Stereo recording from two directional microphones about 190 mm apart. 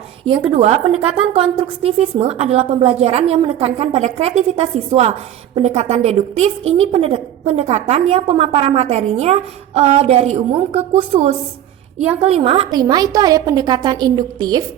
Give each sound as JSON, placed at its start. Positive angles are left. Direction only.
{"t": 0.3, "sound": "a woman's voice", "side_deg": -30}